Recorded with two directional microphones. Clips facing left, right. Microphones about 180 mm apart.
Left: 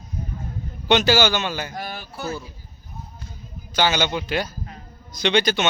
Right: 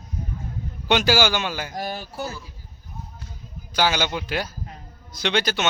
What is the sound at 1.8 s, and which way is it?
Speech, 40° right (ahead or behind).